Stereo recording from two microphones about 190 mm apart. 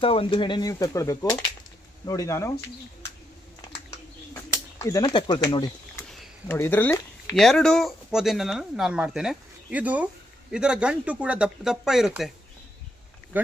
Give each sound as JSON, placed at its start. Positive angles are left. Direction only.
{"t": 0.0, "sound": "speech", "side_deg": 30}
{"t": 3.9, "sound": "a sound", "side_deg": 15}
{"t": 6.4, "sound": "speech", "side_deg": 10}
{"t": 7.3, "sound": "speech", "side_deg": 0}